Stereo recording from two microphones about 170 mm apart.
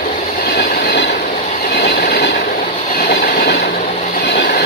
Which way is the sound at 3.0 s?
60° left (ahead or behind).